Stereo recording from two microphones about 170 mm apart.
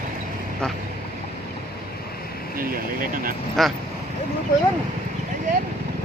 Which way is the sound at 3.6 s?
Centre (ahead or behind).